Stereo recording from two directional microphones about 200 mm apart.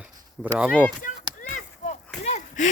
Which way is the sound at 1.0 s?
40° left (ahead or behind).